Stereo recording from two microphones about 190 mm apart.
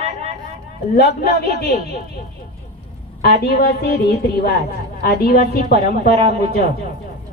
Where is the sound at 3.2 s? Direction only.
55° left (ahead or behind).